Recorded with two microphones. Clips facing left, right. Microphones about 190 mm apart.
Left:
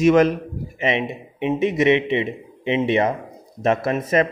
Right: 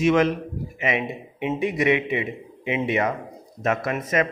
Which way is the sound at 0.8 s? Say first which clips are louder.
Left 3 dB; 25° left (ahead or behind).